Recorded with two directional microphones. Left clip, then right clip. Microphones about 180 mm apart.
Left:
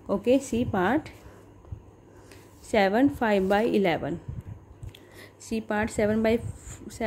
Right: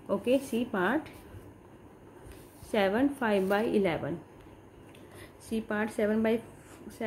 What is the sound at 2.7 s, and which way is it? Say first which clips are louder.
A woman's voice: left 5 dB; 45° left (ahead or behind).